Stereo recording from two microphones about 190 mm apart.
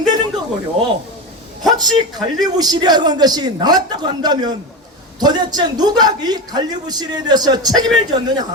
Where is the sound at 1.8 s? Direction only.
20° right (ahead or behind).